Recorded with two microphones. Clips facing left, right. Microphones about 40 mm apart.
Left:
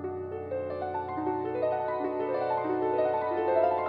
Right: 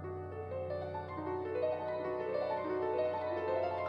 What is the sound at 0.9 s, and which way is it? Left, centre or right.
Music, left.